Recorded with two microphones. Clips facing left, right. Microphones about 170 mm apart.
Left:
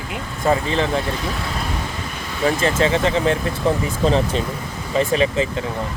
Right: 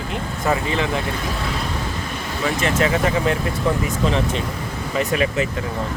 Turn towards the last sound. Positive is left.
turn(degrees=30)  # may be behind; listen again after turning